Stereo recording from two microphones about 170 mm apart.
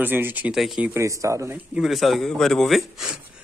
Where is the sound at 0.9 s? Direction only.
20° right (ahead or behind).